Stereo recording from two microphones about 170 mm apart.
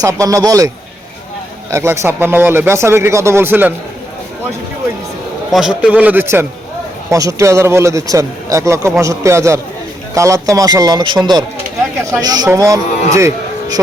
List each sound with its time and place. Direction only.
0.0 s speech: 20° right (ahead or behind)
1.7 s a man's voice: 15° right (ahead or behind)
5.5 s a man's voice: 5° right (ahead or behind); by 11.2 s 25° right (ahead or behind)
12.2 s speech: 20° right (ahead or behind)
13.1 s music: 15° right (ahead or behind)